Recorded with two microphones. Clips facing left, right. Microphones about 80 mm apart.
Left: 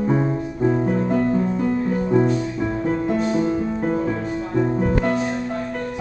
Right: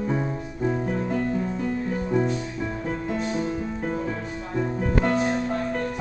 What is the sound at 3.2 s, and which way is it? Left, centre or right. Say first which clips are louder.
Music: left 7 dB; left.